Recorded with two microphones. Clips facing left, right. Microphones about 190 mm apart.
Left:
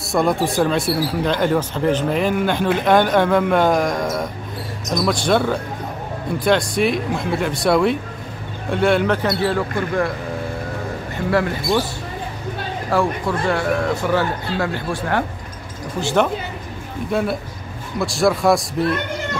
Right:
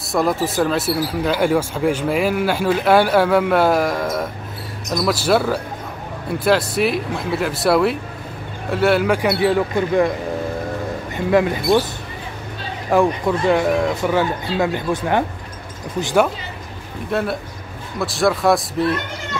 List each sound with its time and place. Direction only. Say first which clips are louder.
0.1 s speech: left 1 dB; centre (ahead or behind); by 10.1 s 20° right (ahead or behind)
11.2 s speech: right 3 dB; 20° right (ahead or behind)
12.9 s speech: right 4 dB; 20° right (ahead or behind)
17.1 s speech: even; centre (ahead or behind)